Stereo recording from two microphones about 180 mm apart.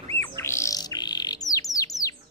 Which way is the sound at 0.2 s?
15° left (ahead or behind).